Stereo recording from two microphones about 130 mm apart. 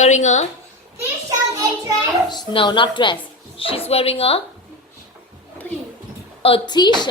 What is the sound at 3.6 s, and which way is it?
Speech, 45° left (ahead or behind).